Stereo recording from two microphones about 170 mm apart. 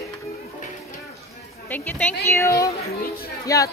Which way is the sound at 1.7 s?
10° left (ahead or behind).